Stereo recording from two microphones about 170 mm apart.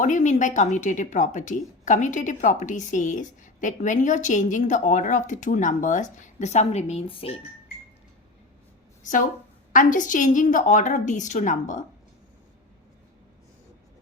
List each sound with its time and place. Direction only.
0.0 s a woman's voice: 45° left (ahead or behind)
9.7 s a woman's voice: 50° left (ahead or behind)